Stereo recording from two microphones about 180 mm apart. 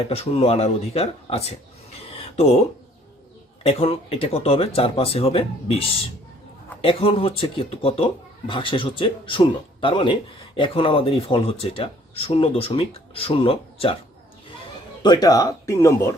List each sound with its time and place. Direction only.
0.1 s speech: 35° left (ahead or behind)
2.0 s a sound: 35° left (ahead or behind)
3.6 s speech: 35° left (ahead or behind)
6.8 s a man's voice: 30° left (ahead or behind)
15.0 s speech: 20° left (ahead or behind)